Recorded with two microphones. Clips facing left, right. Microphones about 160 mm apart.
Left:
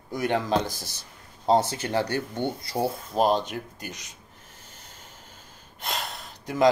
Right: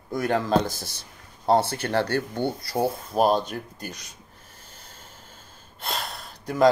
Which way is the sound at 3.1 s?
10° right (ahead or behind).